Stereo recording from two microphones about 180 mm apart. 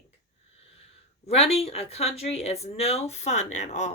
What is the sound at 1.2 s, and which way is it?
Speech, 35° left (ahead or behind).